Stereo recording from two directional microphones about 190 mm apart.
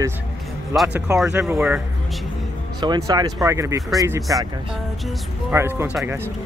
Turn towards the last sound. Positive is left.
turn(degrees=-10)  # may be behind; listen again after turning